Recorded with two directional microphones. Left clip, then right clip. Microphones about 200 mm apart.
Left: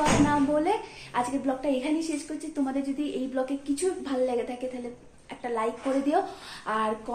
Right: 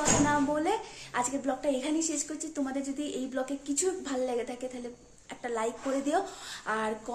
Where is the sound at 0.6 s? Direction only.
5° right (ahead or behind).